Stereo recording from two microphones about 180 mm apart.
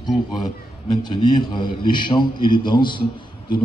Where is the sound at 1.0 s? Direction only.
25° left (ahead or behind).